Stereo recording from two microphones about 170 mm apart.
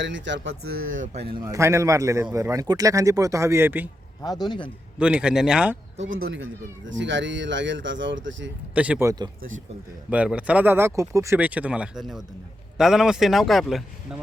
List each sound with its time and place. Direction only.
0.0 s speech: 90° right
0.9 s a man's voice: 50° right (ahead or behind)
1.3 s speech: 25° right (ahead or behind)
4.2 s a man's voice: 25° left (ahead or behind)
4.9 s speech: 5° right (ahead or behind)
6.8 s speech: 90° right
8.7 s speech: 10° right (ahead or behind)
10.1 s a man's voice: 10° right (ahead or behind)